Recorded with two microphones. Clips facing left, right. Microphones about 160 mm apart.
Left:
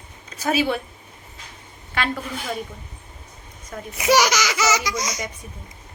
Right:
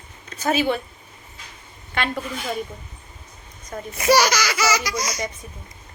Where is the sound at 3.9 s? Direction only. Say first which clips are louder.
Even; 15° left (ahead or behind).